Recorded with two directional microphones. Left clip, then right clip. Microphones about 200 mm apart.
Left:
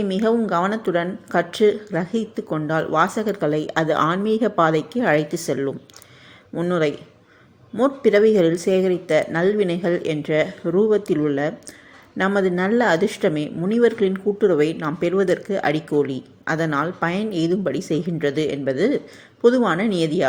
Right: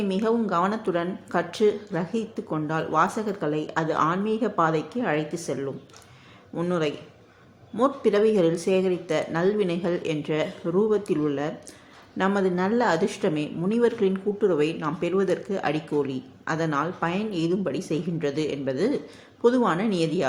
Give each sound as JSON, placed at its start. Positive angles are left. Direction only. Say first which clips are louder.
{"t": 0.0, "sound": "a woman's voice", "louder": "left 5 dB", "side_deg": 20}
{"t": 6.6, "sound": "a woman's voice", "louder": "left 5 dB", "side_deg": 20}